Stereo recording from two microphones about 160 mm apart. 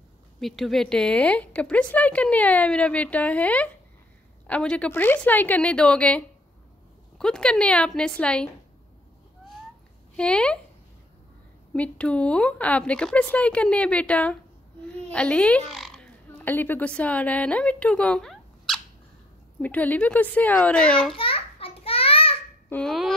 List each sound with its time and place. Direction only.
0.4 s a woman's voice: centre (ahead or behind)
10.1 s a woman's voice: 5° left (ahead or behind)
11.7 s a woman's voice: 10° left (ahead or behind)
21.2 s a sound: 35° left (ahead or behind)
22.7 s a woman's voice: 5° left (ahead or behind)